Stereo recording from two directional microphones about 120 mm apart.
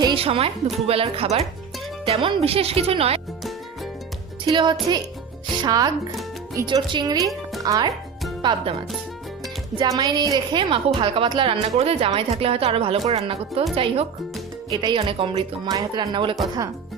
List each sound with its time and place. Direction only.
0.2 s a woman's voice: 55° right (ahead or behind)
4.4 s speech: 35° right (ahead or behind)
8.4 s speech: 40° right (ahead or behind)
9.7 s a woman's voice: 30° right (ahead or behind); by 14.1 s 55° right (ahead or behind)
14.7 s speech: 35° right (ahead or behind)
14.9 s a woman's voice: 50° right (ahead or behind)
15.7 s speech: 40° right (ahead or behind)